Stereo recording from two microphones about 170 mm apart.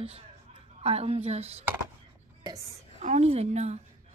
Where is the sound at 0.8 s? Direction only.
35° right (ahead or behind).